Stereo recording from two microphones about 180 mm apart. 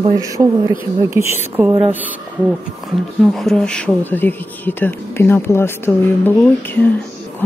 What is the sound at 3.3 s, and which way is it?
Speech, 5° left (ahead or behind).